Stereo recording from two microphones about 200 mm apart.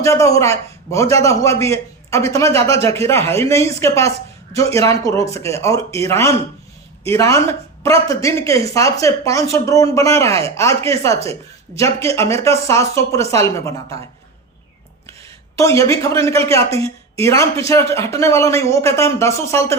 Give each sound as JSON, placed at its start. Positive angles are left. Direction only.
{"t": 0.0, "sound": "speech", "side_deg": 15}
{"t": 15.5, "sound": "speech", "side_deg": 15}